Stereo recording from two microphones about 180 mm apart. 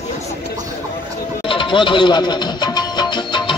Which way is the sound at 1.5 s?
30° left (ahead or behind).